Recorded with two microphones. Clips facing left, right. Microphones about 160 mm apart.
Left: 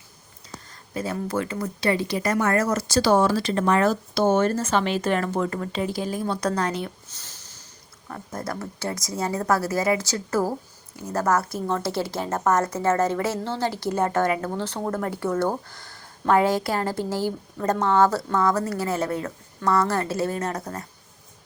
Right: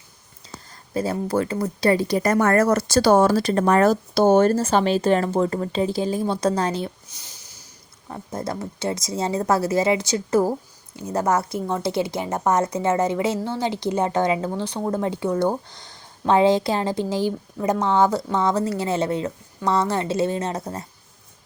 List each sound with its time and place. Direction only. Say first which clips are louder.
0.9 s speech: right 4 dB; 35° right (ahead or behind)
7.1 s a sound: even; 15° right (ahead or behind)
8.0 s speech: right 3 dB; 20° right (ahead or behind)